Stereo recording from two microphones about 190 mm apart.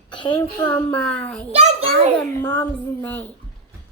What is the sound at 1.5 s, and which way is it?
Speech, 35° right (ahead or behind).